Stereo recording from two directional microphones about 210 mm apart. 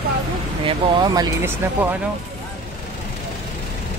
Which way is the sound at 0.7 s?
20° right (ahead or behind).